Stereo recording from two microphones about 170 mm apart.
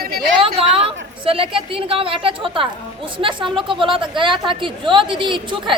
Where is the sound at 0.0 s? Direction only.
60° right (ahead or behind).